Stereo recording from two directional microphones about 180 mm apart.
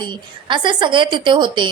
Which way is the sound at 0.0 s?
25° right (ahead or behind).